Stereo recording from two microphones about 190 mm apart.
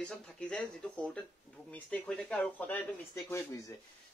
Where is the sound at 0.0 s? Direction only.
5° left (ahead or behind).